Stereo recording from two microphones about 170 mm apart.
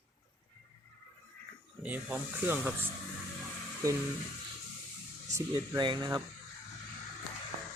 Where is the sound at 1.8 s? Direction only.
10° right (ahead or behind).